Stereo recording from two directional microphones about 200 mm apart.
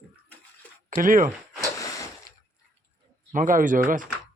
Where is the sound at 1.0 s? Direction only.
40° right (ahead or behind).